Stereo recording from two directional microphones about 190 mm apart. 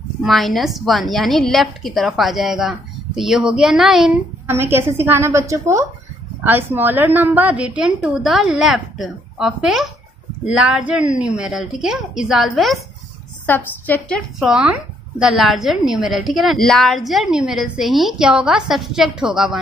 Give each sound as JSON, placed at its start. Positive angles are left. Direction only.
{"t": 0.2, "sound": "a woman's voice", "side_deg": 0}
{"t": 13.5, "sound": "a woman's voice", "side_deg": 10}